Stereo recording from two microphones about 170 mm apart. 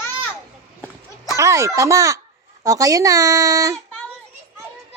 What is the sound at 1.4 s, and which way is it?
A child's voice, 15° right (ahead or behind).